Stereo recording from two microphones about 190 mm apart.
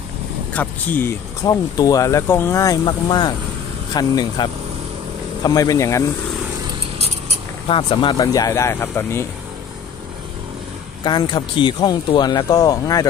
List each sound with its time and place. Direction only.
0.5 s speech: 10° left (ahead or behind)
7.6 s speech: 25° left (ahead or behind)
11.1 s speech: 25° left (ahead or behind)